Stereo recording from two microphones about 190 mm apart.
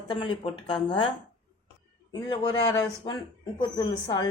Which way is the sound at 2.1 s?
20° left (ahead or behind).